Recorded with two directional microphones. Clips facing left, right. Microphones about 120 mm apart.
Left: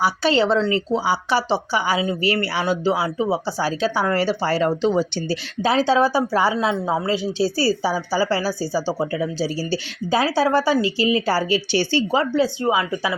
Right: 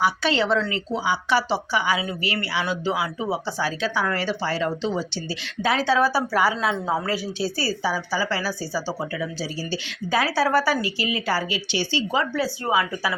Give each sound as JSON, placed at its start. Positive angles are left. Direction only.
{"t": 0.0, "sound": "speech", "side_deg": 35}
{"t": 5.6, "sound": "a woman's voice", "side_deg": 30}
{"t": 12.3, "sound": "a woman's voice", "side_deg": 20}